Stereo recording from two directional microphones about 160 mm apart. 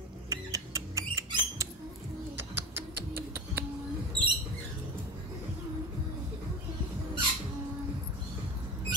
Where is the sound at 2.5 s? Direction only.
90° right.